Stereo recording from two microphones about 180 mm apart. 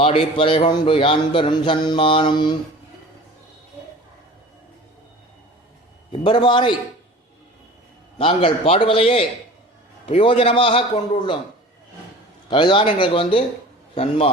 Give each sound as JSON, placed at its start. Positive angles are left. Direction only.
{"t": 0.0, "sound": "a man's voice", "side_deg": 30}
{"t": 6.1, "sound": "a man's voice", "side_deg": 25}
{"t": 8.2, "sound": "a man's voice", "side_deg": 35}
{"t": 12.5, "sound": "a man's voice", "side_deg": 25}